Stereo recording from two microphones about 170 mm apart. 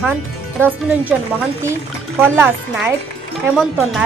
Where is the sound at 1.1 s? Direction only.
Centre (ahead or behind).